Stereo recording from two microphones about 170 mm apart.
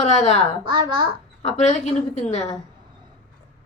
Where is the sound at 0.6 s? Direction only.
25° right (ahead or behind).